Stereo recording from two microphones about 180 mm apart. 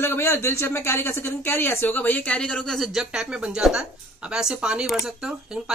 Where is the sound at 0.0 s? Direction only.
15° left (ahead or behind).